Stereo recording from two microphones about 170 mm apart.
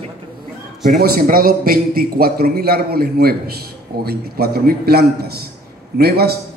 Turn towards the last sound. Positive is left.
turn(degrees=-70)  # may be behind; listen again after turning